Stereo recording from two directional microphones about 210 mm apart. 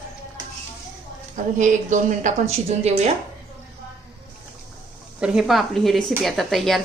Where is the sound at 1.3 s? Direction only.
35° right (ahead or behind).